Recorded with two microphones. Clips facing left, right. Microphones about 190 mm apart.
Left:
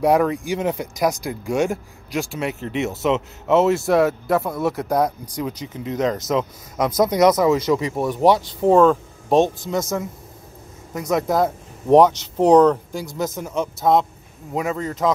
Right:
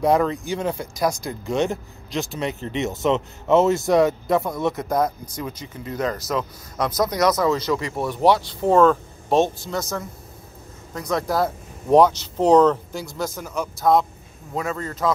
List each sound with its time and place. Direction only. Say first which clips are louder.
0.0 s speech: left 2 dB; 15° left (ahead or behind)
8.7 s speech: even; centre (ahead or behind)
9.6 s speech: left 4 dB; 20° left (ahead or behind)